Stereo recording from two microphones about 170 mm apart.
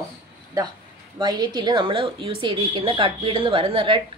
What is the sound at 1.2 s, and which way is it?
A woman's voice, 25° right (ahead or behind).